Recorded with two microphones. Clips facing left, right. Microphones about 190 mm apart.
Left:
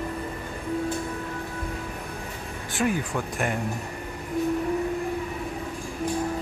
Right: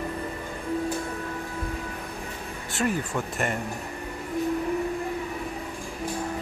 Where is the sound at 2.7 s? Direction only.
Centre (ahead or behind).